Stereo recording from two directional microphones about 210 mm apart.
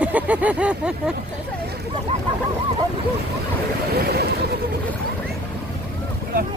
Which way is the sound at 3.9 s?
50° right (ahead or behind).